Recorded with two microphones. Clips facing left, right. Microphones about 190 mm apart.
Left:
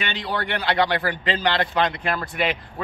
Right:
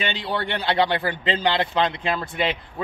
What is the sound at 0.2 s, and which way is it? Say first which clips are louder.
A man's voice: even; 25° right (ahead or behind).